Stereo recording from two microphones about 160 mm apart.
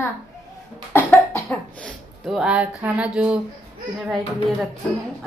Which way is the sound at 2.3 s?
5° right (ahead or behind).